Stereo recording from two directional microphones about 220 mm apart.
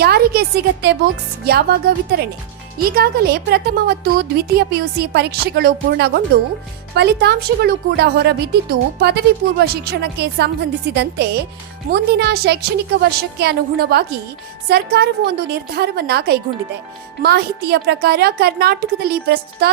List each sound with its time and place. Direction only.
0.0 s speech: 45° right (ahead or behind)